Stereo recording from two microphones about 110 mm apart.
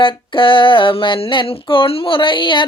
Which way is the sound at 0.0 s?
50° left (ahead or behind).